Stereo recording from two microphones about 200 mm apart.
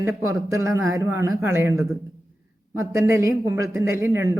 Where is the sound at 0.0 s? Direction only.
15° right (ahead or behind).